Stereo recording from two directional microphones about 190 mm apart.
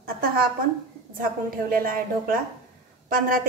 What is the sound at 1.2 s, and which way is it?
A woman's voice, 50° right (ahead or behind).